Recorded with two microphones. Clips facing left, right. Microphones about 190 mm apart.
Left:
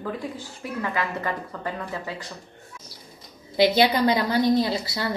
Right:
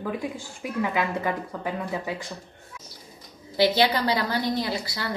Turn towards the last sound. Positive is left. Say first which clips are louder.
# left 4 dB
turn(degrees=25)  # may be behind; listen again after turning